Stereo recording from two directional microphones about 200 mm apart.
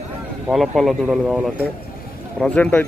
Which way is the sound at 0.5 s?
Centre (ahead or behind).